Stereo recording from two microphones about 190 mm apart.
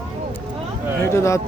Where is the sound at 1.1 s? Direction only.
15° left (ahead or behind).